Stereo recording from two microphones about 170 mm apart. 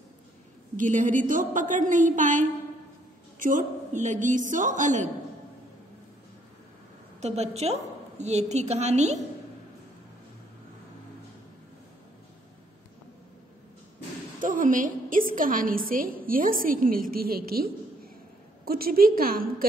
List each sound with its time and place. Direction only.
0.7 s a woman's voice: 50° right (ahead or behind)
7.2 s a woman's voice: 40° right (ahead or behind)
14.4 s a woman's voice: 50° right (ahead or behind)